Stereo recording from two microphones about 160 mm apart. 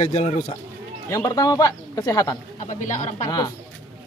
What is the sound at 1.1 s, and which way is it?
Speech, 20° left (ahead or behind).